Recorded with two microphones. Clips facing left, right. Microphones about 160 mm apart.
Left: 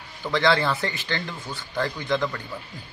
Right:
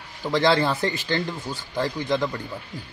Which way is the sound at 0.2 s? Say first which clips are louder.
Right 2 dB; 30° right (ahead or behind).